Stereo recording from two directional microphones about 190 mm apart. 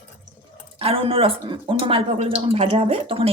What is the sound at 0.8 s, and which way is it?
Speech, 30° right (ahead or behind).